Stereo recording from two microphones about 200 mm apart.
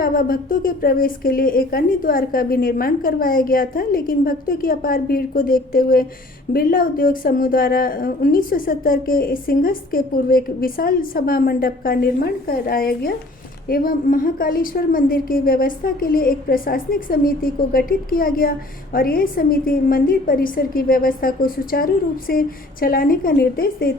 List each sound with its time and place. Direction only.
0.0 s a woman's voice: 45° left (ahead or behind)